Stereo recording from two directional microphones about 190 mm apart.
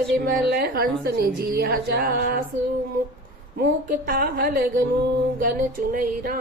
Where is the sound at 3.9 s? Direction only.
55° right (ahead or behind).